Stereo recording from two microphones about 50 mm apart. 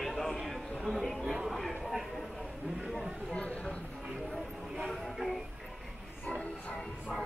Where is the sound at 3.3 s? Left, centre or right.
Left.